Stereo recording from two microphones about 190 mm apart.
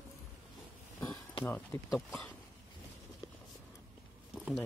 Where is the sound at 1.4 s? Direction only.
5° left (ahead or behind).